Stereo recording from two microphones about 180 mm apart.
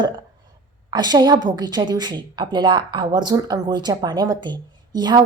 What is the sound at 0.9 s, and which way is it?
A woman's voice, 25° right (ahead or behind).